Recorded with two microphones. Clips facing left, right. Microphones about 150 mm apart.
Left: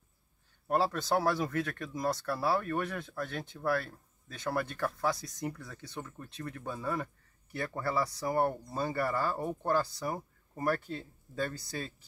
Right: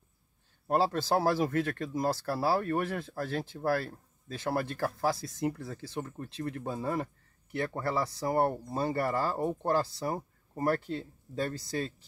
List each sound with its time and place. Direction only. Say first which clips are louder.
0.7 s speech: right 2 dB; 30° right (ahead or behind)